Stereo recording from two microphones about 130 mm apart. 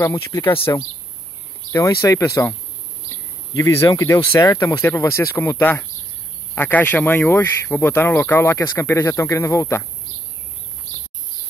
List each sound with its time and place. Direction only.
0.0 s speech: 20° left (ahead or behind)
3.5 s speech: 25° left (ahead or behind)